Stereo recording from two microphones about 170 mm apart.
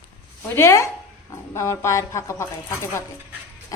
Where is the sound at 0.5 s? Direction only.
15° left (ahead or behind).